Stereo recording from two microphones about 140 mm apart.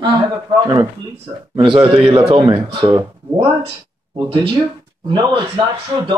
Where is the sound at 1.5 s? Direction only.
35° right (ahead or behind).